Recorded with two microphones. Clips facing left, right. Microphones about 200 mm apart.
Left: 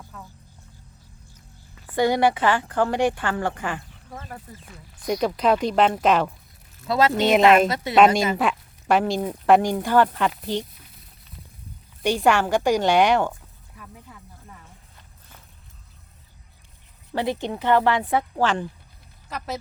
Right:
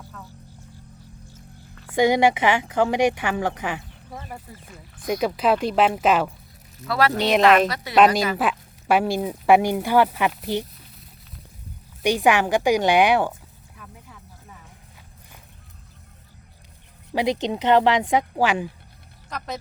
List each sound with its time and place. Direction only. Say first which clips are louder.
0.1 s music: left 1 dB; 5° left (ahead or behind)
1.9 s a woman's voice: right 2 dB; 15° right (ahead or behind)
3.7 s a sound: right 1 dB; 10° right (ahead or behind)
4.7 s speech: even; 5° right (ahead or behind)
6.8 s speech: left 1 dB; 20° left (ahead or behind)
7.2 s speech: left 1 dB; centre (ahead or behind)
8.4 s a sound: even; 5° right (ahead or behind)
9.1 s a woman's voice: right 1 dB; 10° right (ahead or behind)
12.0 s a woman's voice: right 1 dB; 15° right (ahead or behind)
13.7 s a sound: left 1 dB; centre (ahead or behind)
17.4 s a woman's voice: right 2 dB; 20° right (ahead or behind)
19.3 s speech: even; 5° left (ahead or behind)